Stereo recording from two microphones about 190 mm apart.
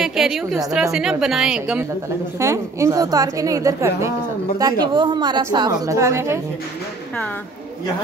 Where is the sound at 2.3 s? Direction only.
15° right (ahead or behind).